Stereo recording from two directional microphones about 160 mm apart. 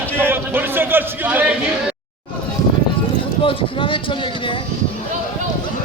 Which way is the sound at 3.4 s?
35° left (ahead or behind).